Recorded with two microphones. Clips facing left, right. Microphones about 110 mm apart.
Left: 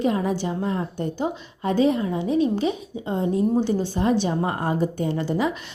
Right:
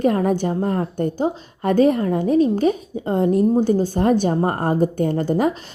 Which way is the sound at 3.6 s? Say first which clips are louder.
Right 5 dB; 45° right (ahead or behind).